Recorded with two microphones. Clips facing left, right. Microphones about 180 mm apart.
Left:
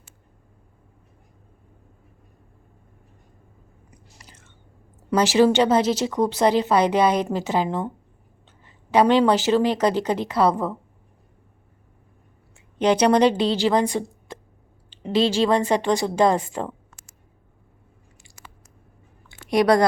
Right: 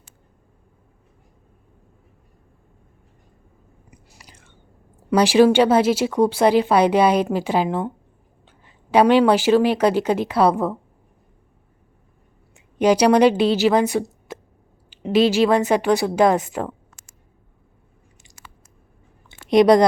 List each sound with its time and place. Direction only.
4.3 s whispering: 10° right (ahead or behind)
5.1 s speech: 15° right (ahead or behind)
12.5 s a woman's voice: 10° right (ahead or behind)
19.3 s a sound: 20° right (ahead or behind)